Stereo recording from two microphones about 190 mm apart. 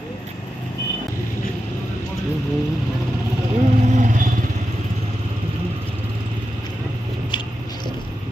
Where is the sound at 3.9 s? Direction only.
40° right (ahead or behind).